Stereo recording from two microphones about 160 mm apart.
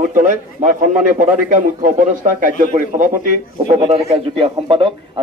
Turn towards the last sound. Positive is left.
turn(degrees=-35)  # may be behind; listen again after turning